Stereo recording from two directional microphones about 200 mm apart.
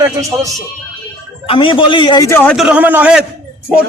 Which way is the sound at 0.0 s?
15° right (ahead or behind).